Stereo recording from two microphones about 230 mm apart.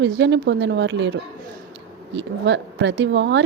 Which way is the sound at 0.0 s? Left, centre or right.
Right.